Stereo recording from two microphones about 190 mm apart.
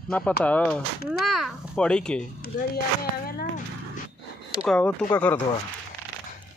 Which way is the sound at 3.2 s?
55° left (ahead or behind).